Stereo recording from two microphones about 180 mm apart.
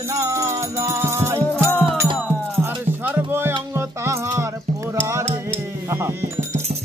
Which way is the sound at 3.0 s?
10° right (ahead or behind).